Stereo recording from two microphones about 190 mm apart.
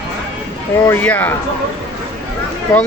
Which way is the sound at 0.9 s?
10° left (ahead or behind).